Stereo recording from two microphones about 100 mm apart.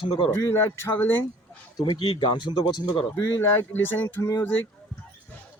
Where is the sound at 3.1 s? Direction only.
20° left (ahead or behind).